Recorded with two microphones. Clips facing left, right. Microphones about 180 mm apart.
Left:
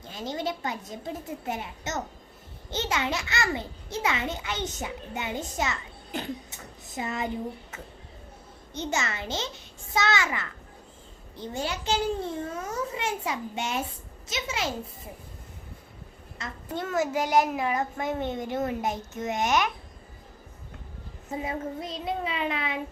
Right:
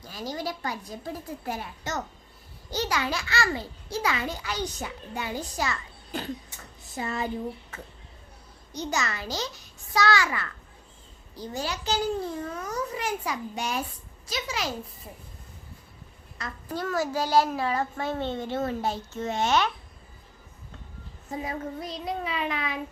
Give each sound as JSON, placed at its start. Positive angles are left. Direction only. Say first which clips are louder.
{"t": 0.0, "sound": "a child's voice", "louder": "left 1 dB", "side_deg": 25}
{"t": 8.7, "sound": "a child's voice", "louder": "even", "side_deg": 25}
{"t": 16.4, "sound": "a child's voice", "louder": "right 1 dB", "side_deg": 20}
{"t": 21.3, "sound": "a child's voice", "louder": "left 1 dB", "side_deg": 25}